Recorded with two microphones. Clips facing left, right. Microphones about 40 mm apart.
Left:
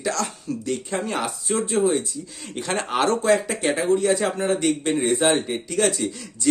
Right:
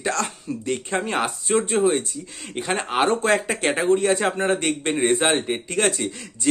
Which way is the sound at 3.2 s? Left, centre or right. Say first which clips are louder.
Left 1 dB; right.